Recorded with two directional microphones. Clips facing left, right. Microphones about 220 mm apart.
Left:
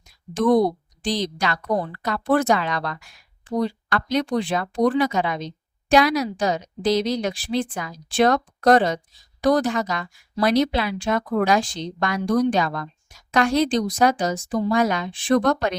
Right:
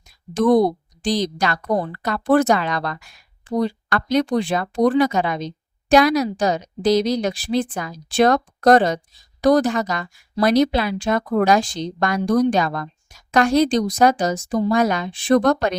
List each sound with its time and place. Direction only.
0.3 s a woman's voice: 40° right (ahead or behind)